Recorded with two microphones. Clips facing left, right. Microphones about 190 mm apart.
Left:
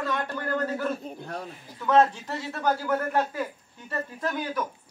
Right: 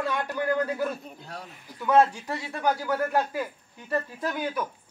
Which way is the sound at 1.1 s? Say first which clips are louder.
Left 5 dB; 55° left (ahead or behind).